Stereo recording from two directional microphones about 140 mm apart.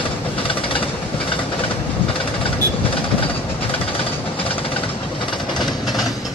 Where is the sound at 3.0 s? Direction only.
40° left (ahead or behind).